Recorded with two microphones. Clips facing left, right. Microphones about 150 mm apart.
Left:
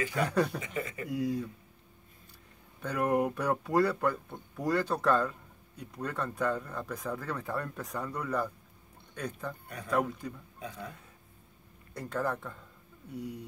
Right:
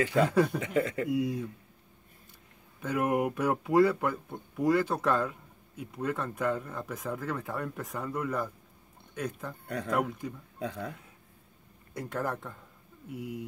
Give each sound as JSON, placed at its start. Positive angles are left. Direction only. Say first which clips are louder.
{"t": 0.3, "sound": "speech", "louder": "right 3 dB", "side_deg": -5}
{"t": 0.6, "sound": "speech", "louder": "right 8 dB", "side_deg": -70}
{"t": 1.1, "sound": "speech", "louder": "even", "side_deg": -5}
{"t": 2.8, "sound": "speech", "louder": "even", "side_deg": -5}
{"t": 11.9, "sound": "speech", "louder": "even", "side_deg": -5}